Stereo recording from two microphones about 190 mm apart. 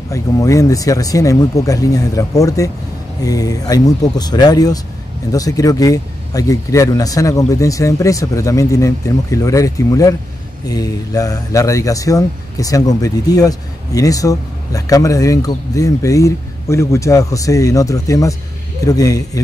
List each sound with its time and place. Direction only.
0.1 s speech: 15° left (ahead or behind)